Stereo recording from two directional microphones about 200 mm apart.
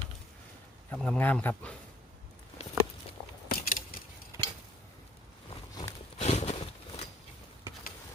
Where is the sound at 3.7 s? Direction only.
45° left (ahead or behind).